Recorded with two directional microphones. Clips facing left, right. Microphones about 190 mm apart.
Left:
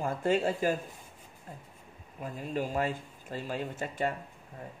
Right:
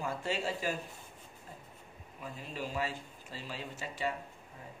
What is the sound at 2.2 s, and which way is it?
Speech, 50° left (ahead or behind).